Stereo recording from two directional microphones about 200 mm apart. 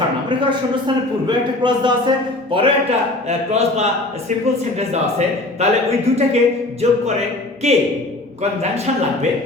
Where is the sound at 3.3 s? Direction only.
35° right (ahead or behind).